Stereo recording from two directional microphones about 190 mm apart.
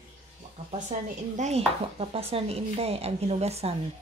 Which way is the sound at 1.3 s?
35° right (ahead or behind).